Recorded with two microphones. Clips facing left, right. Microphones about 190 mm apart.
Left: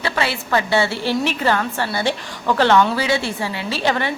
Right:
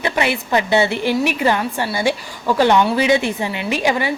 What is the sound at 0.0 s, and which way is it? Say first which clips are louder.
A woman's voice: right 3 dB; 20° right (ahead or behind).